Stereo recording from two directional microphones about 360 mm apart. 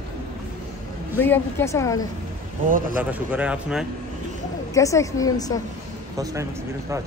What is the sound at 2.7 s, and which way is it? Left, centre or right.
Speech, right.